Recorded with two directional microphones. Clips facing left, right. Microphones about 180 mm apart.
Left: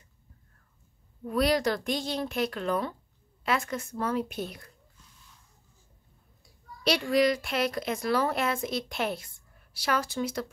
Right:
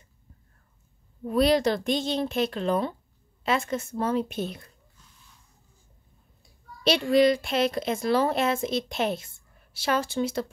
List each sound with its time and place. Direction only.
1.2 s speech: 25° right (ahead or behind)
6.8 s speech: 25° right (ahead or behind)